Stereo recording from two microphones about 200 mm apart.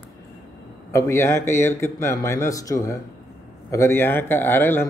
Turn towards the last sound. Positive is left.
turn(degrees=10)  # may be behind; listen again after turning